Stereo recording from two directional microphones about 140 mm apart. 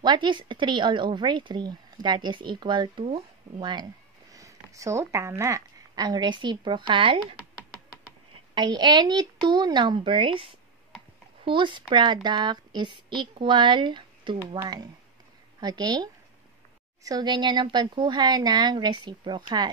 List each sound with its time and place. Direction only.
0.0 s a woman's voice: 30° right (ahead or behind)
4.3 s a sound: 25° right (ahead or behind)
5.4 s a woman's voice: 25° right (ahead or behind)
8.5 s a woman's voice: 30° right (ahead or behind)